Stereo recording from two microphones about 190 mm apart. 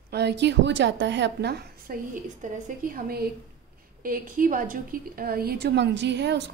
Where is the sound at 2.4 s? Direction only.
40° right (ahead or behind); by 6.5 s 65° right (ahead or behind).